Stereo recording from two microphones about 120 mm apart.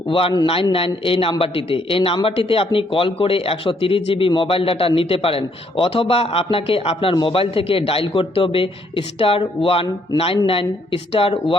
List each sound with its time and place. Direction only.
0.1 s a man's voice: 50° left (ahead or behind)